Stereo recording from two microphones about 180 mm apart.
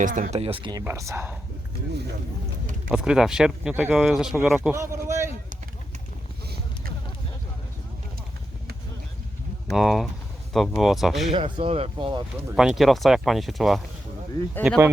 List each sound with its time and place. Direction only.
0.0 s speech: 45° right (ahead or behind)
0.6 s speech: 20° right (ahead or behind)
2.9 s speech: 5° right (ahead or behind)
4.7 s a sound: 15° right (ahead or behind)
9.6 s speech: centre (ahead or behind)
11.3 s speech: 25° right (ahead or behind)
12.5 s speech: centre (ahead or behind)